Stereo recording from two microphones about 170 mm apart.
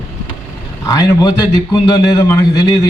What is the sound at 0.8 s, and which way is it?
A man's voice, 20° left (ahead or behind).